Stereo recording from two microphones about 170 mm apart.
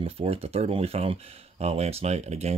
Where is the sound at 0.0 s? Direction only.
35° right (ahead or behind).